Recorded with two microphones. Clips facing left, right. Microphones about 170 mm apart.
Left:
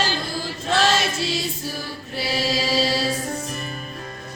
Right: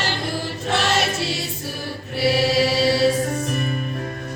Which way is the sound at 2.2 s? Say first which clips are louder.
Right 6 dB; 65° right (ahead or behind).